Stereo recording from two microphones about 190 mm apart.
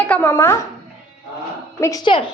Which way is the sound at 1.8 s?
20° left (ahead or behind).